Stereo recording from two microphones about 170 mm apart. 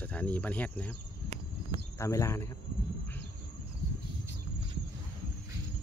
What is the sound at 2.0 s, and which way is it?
Speech, 15° left (ahead or behind).